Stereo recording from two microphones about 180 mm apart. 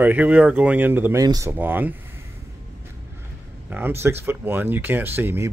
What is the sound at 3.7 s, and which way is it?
Speech, 10° right (ahead or behind).